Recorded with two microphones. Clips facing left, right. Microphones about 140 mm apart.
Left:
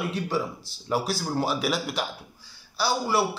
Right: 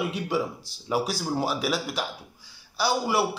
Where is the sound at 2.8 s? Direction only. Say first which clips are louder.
Even; 15° right (ahead or behind).